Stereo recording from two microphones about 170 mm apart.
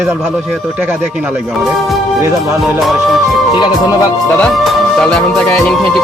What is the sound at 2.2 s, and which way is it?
Speech, 15° right (ahead or behind).